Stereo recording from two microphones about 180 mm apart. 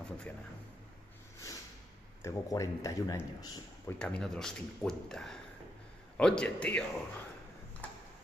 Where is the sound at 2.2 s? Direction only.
20° left (ahead or behind).